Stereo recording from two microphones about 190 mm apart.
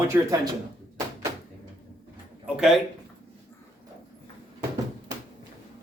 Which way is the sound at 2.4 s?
5° right (ahead or behind).